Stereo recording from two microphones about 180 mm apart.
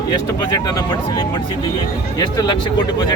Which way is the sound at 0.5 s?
20° left (ahead or behind).